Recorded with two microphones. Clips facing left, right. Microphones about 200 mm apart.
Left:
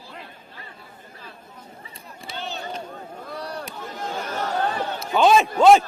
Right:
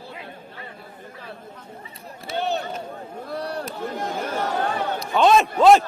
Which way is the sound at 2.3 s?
60° right (ahead or behind).